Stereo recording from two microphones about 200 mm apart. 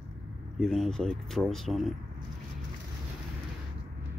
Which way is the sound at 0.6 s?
Centre (ahead or behind).